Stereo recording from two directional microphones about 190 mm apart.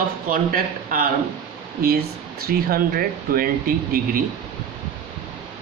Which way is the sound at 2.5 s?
50° right (ahead or behind).